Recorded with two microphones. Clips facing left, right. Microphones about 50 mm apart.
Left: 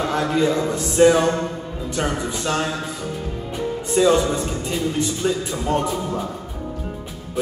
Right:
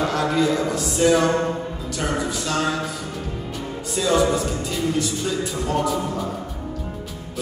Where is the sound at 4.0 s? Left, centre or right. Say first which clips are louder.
Left 8 dB; left.